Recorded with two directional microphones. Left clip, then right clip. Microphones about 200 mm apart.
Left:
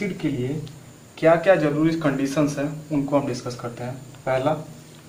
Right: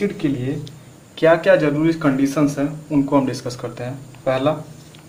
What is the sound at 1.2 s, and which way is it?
Speech, 45° right (ahead or behind).